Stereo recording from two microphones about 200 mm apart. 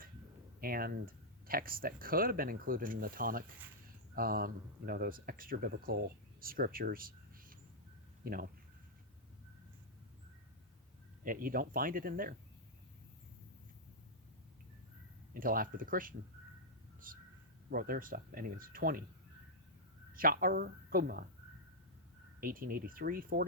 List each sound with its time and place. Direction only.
0.6 s speech: 45° right (ahead or behind)
11.2 s speech: 45° right (ahead or behind)
15.3 s speech: 45° right (ahead or behind)
17.1 s a sound: 45° right (ahead or behind)
17.7 s speech: 45° right (ahead or behind)
20.1 s speech: 45° right (ahead or behind)
22.4 s speech: 45° right (ahead or behind)